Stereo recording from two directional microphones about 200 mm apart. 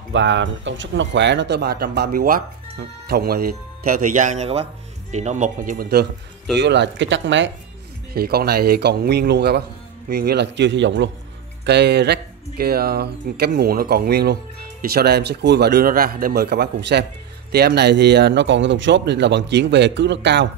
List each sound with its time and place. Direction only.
0.1 s speech: 65° right (ahead or behind); by 6.0 s 50° right (ahead or behind)
6.6 s a man's voice: 60° right (ahead or behind)
8.1 s a man's voice: 50° right (ahead or behind)